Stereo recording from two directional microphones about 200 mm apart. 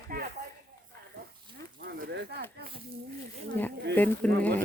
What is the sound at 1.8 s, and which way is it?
Speech, 50° right (ahead or behind).